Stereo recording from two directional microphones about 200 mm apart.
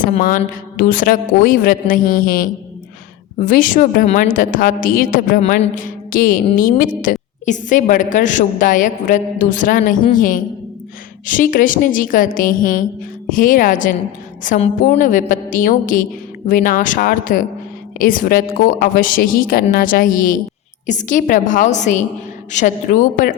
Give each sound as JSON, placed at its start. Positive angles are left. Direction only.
{"t": 0.0, "sound": "a woman's voice", "side_deg": 45}